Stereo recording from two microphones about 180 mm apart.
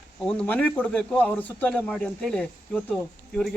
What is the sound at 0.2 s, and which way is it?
A man's voice, 5° left (ahead or behind).